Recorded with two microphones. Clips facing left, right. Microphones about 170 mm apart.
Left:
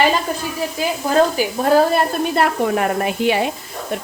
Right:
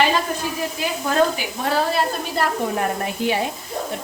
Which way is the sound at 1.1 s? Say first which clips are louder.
Left 4 dB; 40° left (ahead or behind).